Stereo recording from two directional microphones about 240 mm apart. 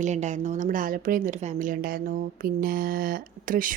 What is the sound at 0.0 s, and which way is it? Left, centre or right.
A woman's voice, right.